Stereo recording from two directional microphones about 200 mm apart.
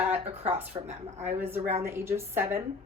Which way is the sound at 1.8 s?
15° right (ahead or behind).